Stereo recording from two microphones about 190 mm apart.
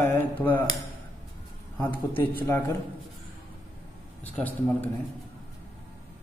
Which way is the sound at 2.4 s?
10° left (ahead or behind).